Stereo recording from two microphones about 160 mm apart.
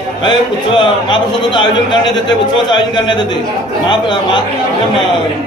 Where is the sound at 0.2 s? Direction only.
30° left (ahead or behind).